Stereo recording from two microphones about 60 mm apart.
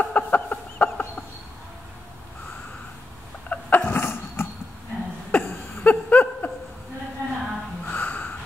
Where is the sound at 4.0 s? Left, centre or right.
Left.